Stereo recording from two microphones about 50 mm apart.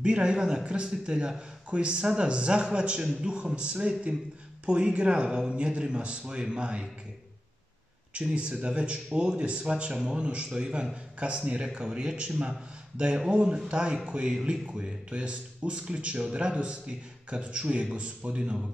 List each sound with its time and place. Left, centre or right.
0.0 s speech: centre
8.1 s speech: centre